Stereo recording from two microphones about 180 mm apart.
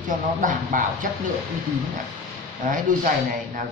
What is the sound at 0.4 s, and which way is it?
Speech, 50° right (ahead or behind).